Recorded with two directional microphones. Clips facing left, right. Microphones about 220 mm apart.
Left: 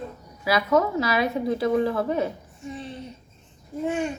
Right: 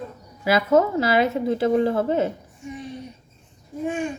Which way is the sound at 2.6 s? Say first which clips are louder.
Right 1 dB; 15° right (ahead or behind).